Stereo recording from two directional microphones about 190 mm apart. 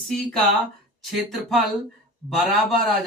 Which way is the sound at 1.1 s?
Centre (ahead or behind).